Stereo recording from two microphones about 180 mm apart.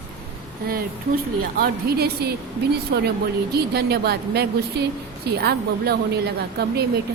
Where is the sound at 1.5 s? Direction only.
60° right (ahead or behind).